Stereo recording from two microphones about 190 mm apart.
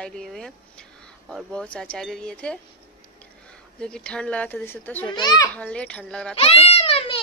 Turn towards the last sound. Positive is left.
turn(degrees=30)  # may be behind; listen again after turning